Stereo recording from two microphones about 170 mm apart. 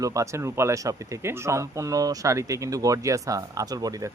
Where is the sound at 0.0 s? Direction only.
20° right (ahead or behind).